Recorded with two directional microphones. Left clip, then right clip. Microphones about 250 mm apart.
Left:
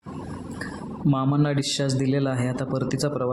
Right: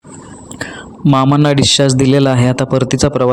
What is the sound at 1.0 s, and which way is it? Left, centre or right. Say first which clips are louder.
A man's voice: right 13 dB; right.